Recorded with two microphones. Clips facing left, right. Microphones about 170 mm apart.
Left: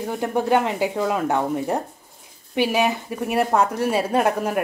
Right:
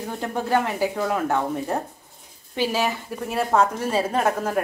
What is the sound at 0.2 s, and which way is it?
A woman's voice, 20° left (ahead or behind).